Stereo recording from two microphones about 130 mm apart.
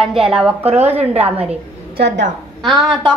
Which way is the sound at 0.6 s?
55° right (ahead or behind).